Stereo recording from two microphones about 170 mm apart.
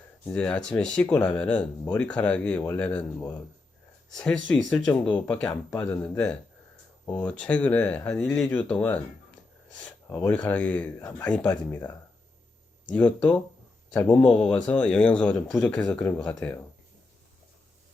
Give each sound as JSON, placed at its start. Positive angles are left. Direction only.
{"t": 0.3, "sound": "speech", "side_deg": 5}
{"t": 4.2, "sound": "speech", "side_deg": 5}
{"t": 12.9, "sound": "speech", "side_deg": 5}